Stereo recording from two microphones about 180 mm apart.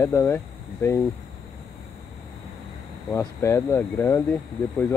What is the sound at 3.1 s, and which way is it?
Speech, 15° left (ahead or behind).